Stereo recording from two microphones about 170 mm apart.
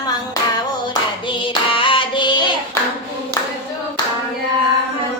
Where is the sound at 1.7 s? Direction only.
30° left (ahead or behind).